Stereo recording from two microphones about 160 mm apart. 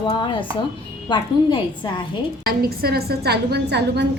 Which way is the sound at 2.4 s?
70° right (ahead or behind).